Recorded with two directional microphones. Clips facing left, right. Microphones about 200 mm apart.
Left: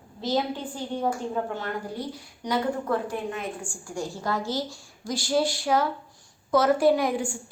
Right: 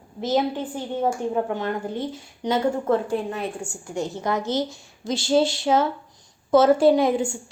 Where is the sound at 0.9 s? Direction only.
25° right (ahead or behind).